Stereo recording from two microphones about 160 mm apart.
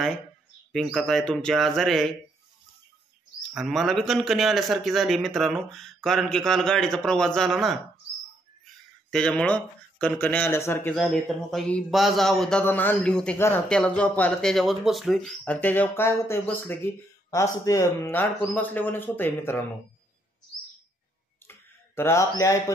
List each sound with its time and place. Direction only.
0.7 s a man's voice: centre (ahead or behind)
3.5 s a man's voice: centre (ahead or behind)
9.1 s speech: 5° left (ahead or behind)
11.0 s a man's voice: centre (ahead or behind)
21.5 s a sound: 15° left (ahead or behind)